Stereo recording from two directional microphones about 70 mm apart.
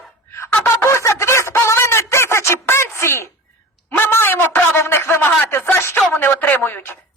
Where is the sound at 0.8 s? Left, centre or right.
Left.